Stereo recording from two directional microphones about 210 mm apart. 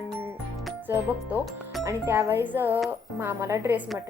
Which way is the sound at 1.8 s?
15° right (ahead or behind).